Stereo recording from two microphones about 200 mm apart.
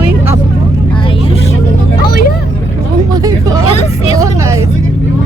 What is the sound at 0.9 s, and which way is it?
Vehicle, 25° left (ahead or behind).